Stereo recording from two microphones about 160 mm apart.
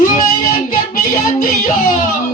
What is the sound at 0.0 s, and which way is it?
Music, 60° left (ahead or behind).